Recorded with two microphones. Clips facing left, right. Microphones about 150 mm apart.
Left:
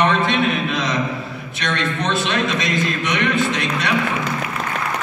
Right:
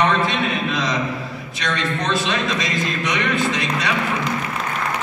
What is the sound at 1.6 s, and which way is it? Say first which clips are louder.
Speech: left 1 dB; centre (ahead or behind).